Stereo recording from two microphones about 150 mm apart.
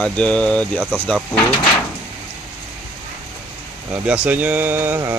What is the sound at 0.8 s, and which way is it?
Speech, 10° right (ahead or behind).